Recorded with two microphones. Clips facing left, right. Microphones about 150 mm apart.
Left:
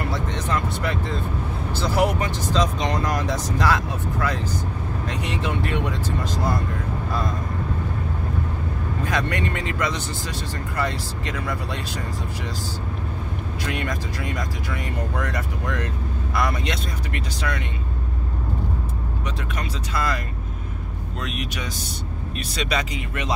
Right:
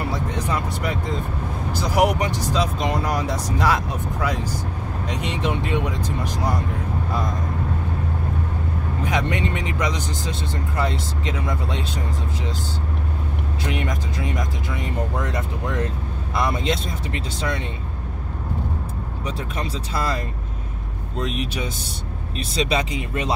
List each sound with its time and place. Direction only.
0.1 s speech: 10° right (ahead or behind)
9.0 s speech: 20° right (ahead or behind)
13.7 s speech: 20° right (ahead or behind)
19.2 s speech: 30° right (ahead or behind)
22.4 s speech: 30° right (ahead or behind)